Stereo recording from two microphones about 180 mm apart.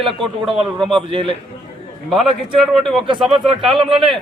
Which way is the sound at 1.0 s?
30° right (ahead or behind).